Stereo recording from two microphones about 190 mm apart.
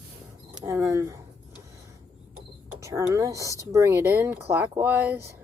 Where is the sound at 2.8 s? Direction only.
15° right (ahead or behind).